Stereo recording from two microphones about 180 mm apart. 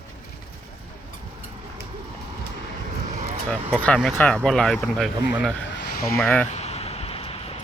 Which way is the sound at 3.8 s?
10° left (ahead or behind).